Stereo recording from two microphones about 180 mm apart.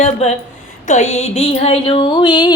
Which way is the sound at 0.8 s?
40° left (ahead or behind).